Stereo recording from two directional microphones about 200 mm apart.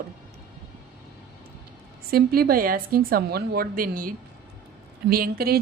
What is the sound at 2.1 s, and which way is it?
A woman's voice, 50° right (ahead or behind).